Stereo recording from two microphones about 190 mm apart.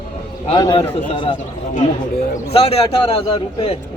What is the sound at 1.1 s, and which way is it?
Speech, 25° left (ahead or behind).